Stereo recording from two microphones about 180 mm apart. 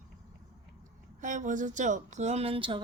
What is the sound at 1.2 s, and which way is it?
Speech, 45° right (ahead or behind).